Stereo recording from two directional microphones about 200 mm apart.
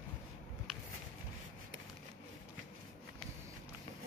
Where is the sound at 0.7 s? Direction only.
Centre (ahead or behind).